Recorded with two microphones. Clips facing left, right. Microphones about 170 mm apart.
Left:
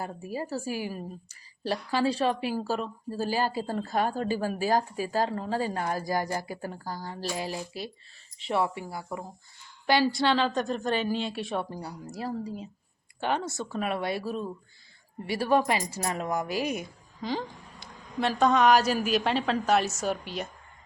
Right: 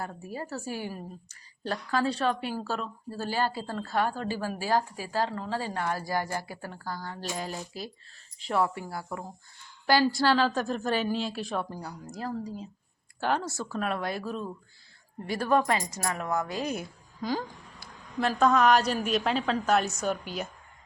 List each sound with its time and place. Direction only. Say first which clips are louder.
0.0 s a woman's voice: left 3 dB; 15° left (ahead or behind)
7.0 s speech: left 2 dB; 35° left (ahead or behind)
7.3 s a woman's voice: left 3 dB; 5° left (ahead or behind)
15.9 s a woman's voice: left 1 dB; 25° left (ahead or behind)
16.7 s a woman's voice: even; centre (ahead or behind)